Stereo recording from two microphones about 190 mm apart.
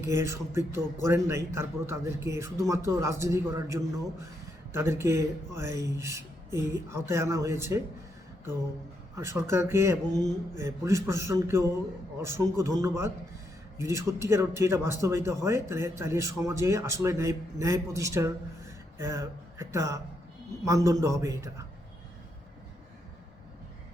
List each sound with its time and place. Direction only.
0.0 s a man's voice: 15° right (ahead or behind)
9.1 s a man's voice: 15° right (ahead or behind)